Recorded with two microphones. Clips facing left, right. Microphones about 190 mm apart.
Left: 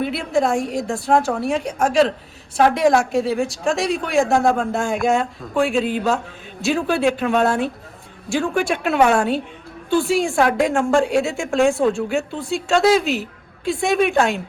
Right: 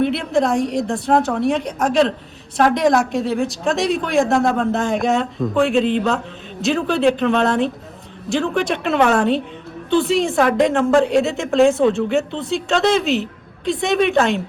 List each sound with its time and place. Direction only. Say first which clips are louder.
0.0 s a woman's voice: right 2 dB; centre (ahead or behind)